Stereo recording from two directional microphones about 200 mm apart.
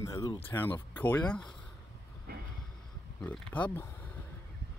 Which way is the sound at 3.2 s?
5° left (ahead or behind).